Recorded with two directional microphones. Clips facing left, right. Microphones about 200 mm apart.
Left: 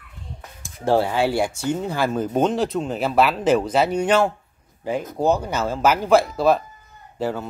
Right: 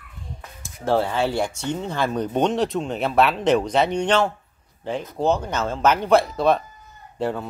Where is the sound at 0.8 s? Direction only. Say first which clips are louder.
Left 2 dB; 10° left (ahead or behind).